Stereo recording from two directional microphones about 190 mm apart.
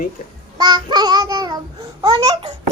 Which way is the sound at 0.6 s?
25° right (ahead or behind).